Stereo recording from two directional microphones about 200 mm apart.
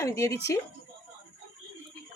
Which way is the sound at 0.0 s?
15° left (ahead or behind).